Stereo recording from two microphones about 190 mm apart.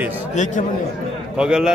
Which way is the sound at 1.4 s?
5° right (ahead or behind).